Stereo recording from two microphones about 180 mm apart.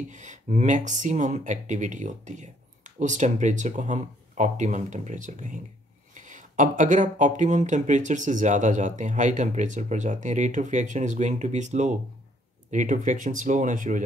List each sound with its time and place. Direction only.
0.1 s speech: 40° right (ahead or behind)